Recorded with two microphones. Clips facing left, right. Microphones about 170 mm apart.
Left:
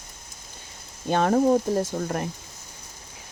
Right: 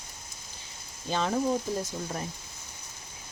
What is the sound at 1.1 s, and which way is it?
Speech, 55° left (ahead or behind).